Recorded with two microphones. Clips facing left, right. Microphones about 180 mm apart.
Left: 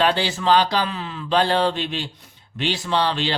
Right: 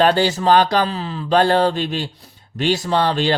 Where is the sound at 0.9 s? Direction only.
35° right (ahead or behind).